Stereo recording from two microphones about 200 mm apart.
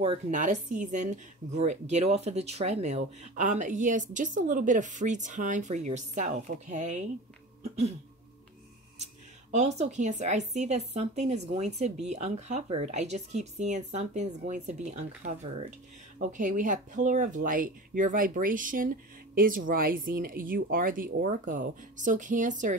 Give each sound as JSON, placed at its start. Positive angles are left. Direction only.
{"t": 0.0, "sound": "speech", "side_deg": -35}
{"t": 7.6, "sound": "cough", "side_deg": -30}
{"t": 8.9, "sound": "speech", "side_deg": -35}